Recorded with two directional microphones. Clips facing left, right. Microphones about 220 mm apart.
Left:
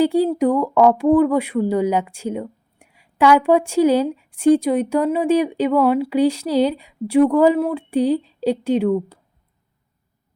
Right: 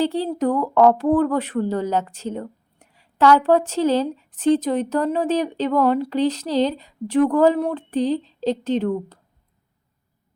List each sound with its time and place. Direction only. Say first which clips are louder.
0.0 s speech: left 5 dB; 10° left (ahead or behind)